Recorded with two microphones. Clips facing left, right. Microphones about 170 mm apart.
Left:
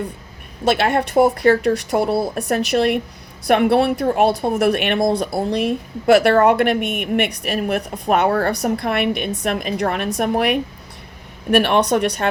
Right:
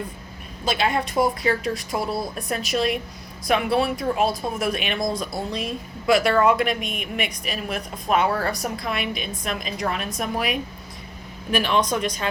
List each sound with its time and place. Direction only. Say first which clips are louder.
0.6 s a woman's voice: left 6 dB; 65° left (ahead or behind)